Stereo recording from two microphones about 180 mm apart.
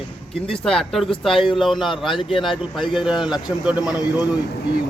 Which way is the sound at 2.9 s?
5° right (ahead or behind).